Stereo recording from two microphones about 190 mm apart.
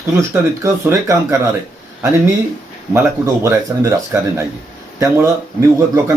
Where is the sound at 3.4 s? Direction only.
15° right (ahead or behind).